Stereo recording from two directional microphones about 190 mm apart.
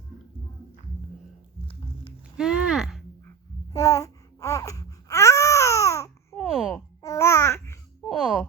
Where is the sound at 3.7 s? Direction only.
15° left (ahead or behind).